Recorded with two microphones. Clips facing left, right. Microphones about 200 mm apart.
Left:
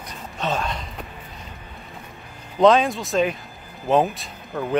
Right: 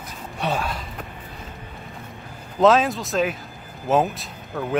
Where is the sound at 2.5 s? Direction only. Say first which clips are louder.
Left 1 dB; centre (ahead or behind).